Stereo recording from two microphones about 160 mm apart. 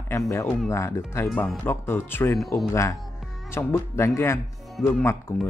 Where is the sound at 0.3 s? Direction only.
20° left (ahead or behind).